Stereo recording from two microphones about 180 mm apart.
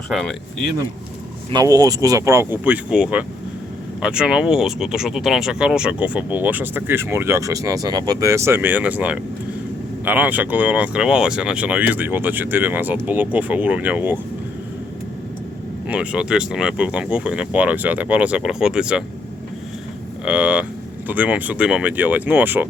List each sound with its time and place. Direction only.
0.1 s speech: centre (ahead or behind)
1.5 s speech: 20° right (ahead or behind)
15.9 s speech: 5° right (ahead or behind)
20.2 s speech: 5° right (ahead or behind)